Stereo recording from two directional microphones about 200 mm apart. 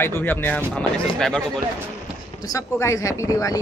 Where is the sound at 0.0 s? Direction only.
10° left (ahead or behind).